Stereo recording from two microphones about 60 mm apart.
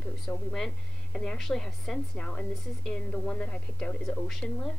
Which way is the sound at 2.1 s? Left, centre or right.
Centre.